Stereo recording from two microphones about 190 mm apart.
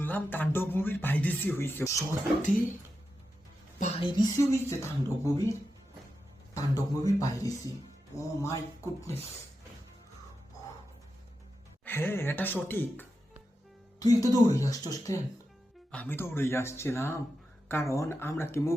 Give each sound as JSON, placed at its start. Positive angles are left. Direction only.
{"t": 0.0, "sound": "speech", "side_deg": 10}
{"t": 3.8, "sound": "a sound", "side_deg": 35}
{"t": 4.2, "sound": "speech", "side_deg": 15}
{"t": 11.9, "sound": "speech", "side_deg": 10}